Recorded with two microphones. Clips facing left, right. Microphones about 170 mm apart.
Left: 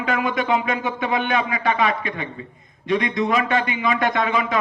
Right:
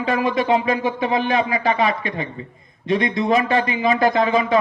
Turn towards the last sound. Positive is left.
turn(degrees=-30)  # may be behind; listen again after turning